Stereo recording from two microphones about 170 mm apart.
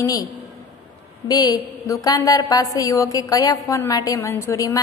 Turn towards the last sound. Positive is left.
turn(degrees=20)  # may be behind; listen again after turning